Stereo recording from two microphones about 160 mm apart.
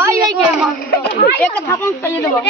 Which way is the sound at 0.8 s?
65° left (ahead or behind).